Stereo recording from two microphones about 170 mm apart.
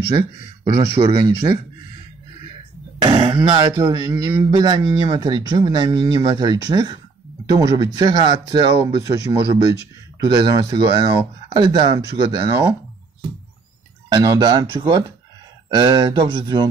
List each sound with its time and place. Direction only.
0.7 s speech: 25° right (ahead or behind)
3.0 s a sound: 25° right (ahead or behind)
3.4 s speech: 25° right (ahead or behind)
14.0 s speech: 25° right (ahead or behind)